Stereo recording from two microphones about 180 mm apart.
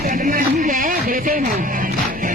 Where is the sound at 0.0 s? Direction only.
50° right (ahead or behind).